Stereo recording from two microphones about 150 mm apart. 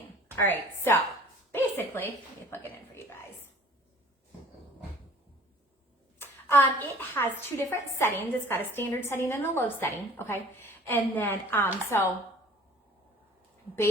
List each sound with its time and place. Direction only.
0.3 s a woman's voice: 15° left (ahead or behind)
6.1 s a sound: 15° left (ahead or behind)
7.1 s a woman's voice: 15° left (ahead or behind)